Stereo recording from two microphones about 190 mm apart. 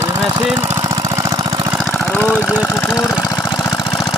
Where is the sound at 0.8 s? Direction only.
15° right (ahead or behind).